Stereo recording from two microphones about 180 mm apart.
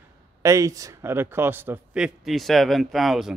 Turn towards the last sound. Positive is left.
turn(degrees=0)  # may be behind; listen again after turning